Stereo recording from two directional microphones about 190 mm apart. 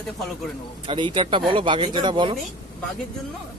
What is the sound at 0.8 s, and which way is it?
Speech, 25° right (ahead or behind).